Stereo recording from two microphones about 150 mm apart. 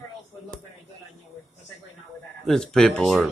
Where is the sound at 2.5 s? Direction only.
5° left (ahead or behind).